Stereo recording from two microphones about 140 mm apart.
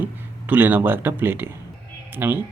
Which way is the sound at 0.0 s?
15° right (ahead or behind).